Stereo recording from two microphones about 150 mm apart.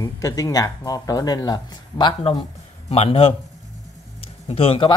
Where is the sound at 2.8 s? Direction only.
45° left (ahead or behind).